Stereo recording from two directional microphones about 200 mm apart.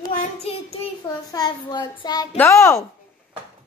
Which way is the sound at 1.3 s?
20° left (ahead or behind).